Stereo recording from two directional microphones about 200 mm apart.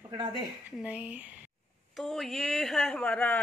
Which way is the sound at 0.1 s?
20° right (ahead or behind).